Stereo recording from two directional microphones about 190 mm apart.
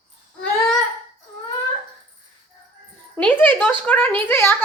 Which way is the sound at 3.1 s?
10° left (ahead or behind).